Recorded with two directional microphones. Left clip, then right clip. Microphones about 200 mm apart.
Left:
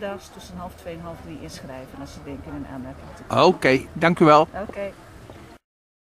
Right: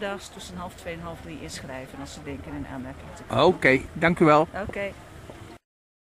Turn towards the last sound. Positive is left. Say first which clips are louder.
# left 4 dB
turn(degrees=0)  # may be behind; listen again after turning